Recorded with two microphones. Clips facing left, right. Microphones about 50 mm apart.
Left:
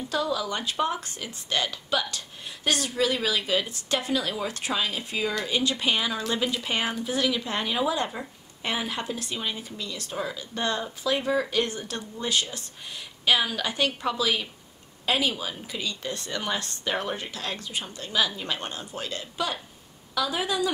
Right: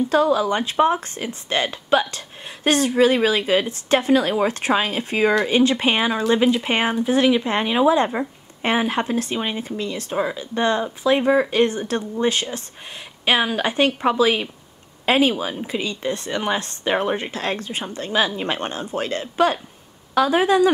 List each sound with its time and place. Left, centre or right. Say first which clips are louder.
0.1 s speech: right 7 dB; right